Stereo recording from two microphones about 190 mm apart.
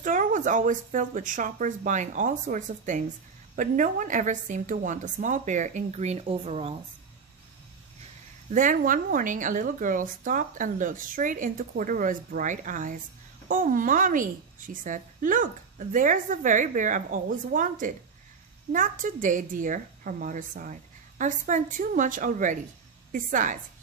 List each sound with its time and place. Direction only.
0.0 s a woman's voice: 45° right (ahead or behind)
8.5 s a woman's voice: 45° right (ahead or behind)